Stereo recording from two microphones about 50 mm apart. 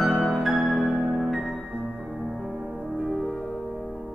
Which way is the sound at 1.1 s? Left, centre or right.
Centre.